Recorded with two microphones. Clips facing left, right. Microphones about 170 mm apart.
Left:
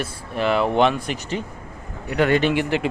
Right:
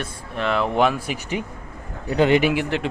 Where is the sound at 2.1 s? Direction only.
30° right (ahead or behind).